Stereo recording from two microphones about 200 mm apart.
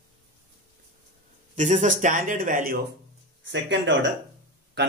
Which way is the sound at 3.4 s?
65° right (ahead or behind).